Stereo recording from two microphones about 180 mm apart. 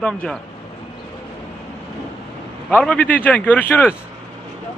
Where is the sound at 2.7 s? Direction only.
5° left (ahead or behind).